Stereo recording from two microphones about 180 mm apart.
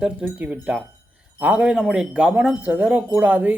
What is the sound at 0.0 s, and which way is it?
Speech, 5° right (ahead or behind).